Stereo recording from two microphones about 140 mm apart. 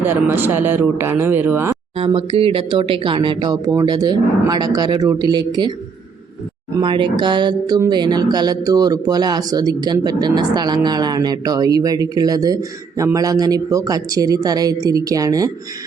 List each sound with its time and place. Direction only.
0.0 s speech: 15° right (ahead or behind)
2.0 s speech: 40° right (ahead or behind)
6.7 s speech: 35° right (ahead or behind)